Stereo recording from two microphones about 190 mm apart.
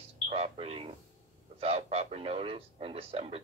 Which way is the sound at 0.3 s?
30° right (ahead or behind).